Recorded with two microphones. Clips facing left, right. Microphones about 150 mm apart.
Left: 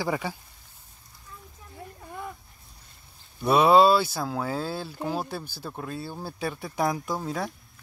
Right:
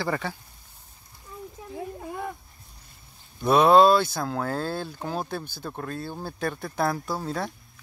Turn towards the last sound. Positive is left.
turn(degrees=5)  # may be behind; listen again after turning